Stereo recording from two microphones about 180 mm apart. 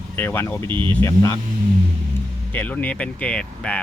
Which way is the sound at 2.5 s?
10° left (ahead or behind).